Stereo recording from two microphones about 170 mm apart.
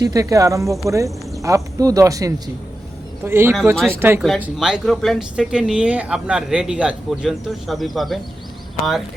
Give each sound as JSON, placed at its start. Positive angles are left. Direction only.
{"t": 0.0, "sound": "speech", "side_deg": -20}